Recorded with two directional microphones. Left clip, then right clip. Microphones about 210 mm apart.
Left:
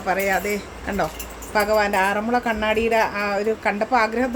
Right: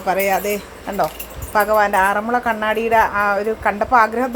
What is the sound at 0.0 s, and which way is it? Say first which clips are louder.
Speech: right 3 dB; 15° right (ahead or behind).